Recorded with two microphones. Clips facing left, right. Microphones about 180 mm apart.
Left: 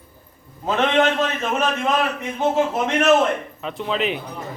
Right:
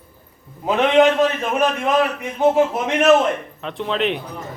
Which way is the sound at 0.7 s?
15° right (ahead or behind).